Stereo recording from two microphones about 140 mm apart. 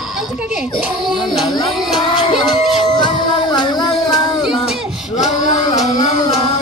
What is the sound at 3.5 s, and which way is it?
Music, 30° left (ahead or behind).